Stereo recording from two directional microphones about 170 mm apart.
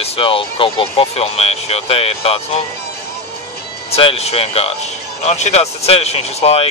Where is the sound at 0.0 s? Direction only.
35° left (ahead or behind).